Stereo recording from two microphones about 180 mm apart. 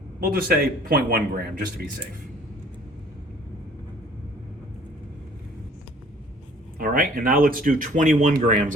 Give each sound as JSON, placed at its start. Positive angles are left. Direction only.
{"t": 0.2, "sound": "speech", "side_deg": -55}
{"t": 6.7, "sound": "speech", "side_deg": -50}